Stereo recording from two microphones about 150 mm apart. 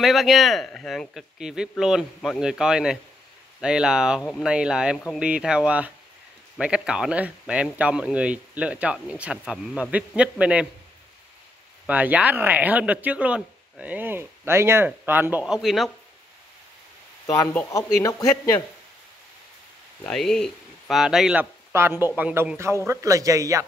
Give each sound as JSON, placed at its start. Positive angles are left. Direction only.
{"t": 0.0, "sound": "speech", "side_deg": 0}
{"t": 11.8, "sound": "speech", "side_deg": -10}
{"t": 17.3, "sound": "speech", "side_deg": 20}
{"t": 20.0, "sound": "a man's voice", "side_deg": 5}